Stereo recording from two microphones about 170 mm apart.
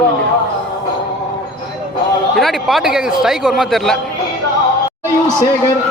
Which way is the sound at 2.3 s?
Centre (ahead or behind).